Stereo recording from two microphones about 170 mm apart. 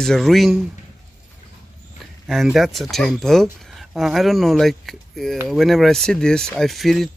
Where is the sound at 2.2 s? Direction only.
Centre (ahead or behind).